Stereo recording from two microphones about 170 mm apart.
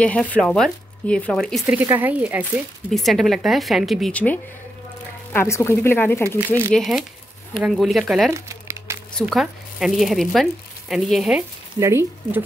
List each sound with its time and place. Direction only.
0.0 s speech: 10° left (ahead or behind)
1.8 s speech: 10° right (ahead or behind)
2.9 s speech: centre (ahead or behind)
6.2 s speech: 15° right (ahead or behind)
6.7 s speech: centre (ahead or behind)
8.3 s crumpling: 15° right (ahead or behind)
9.2 s speech: centre (ahead or behind)
11.8 s speech: 15° right (ahead or behind)